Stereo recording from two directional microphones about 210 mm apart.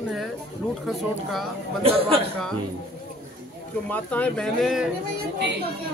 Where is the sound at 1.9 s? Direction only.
25° right (ahead or behind).